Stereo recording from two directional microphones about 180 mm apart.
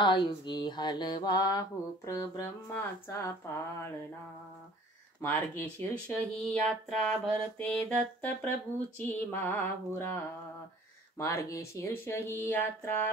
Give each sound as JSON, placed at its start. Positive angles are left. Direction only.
{"t": 0.0, "sound": "mantra", "side_deg": 25}
{"t": 2.0, "sound": "speech", "side_deg": 15}
{"t": 5.2, "sound": "speech", "side_deg": 10}